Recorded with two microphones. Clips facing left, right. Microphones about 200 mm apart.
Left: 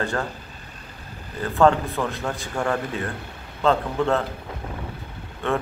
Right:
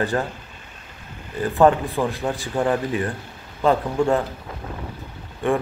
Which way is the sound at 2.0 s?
15° right (ahead or behind).